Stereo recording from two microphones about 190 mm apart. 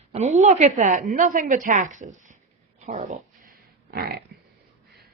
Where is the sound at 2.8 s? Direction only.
35° right (ahead or behind); by 4.2 s 55° right (ahead or behind).